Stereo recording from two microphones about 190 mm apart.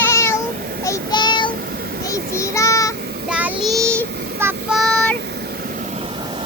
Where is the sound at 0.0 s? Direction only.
15° left (ahead or behind).